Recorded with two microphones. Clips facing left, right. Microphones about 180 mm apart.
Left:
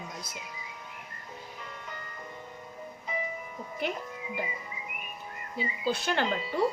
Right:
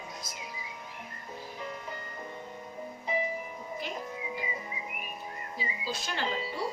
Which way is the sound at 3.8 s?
60° left (ahead or behind).